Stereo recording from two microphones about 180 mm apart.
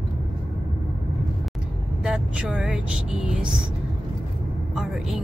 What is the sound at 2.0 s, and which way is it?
Speech, 5° right (ahead or behind).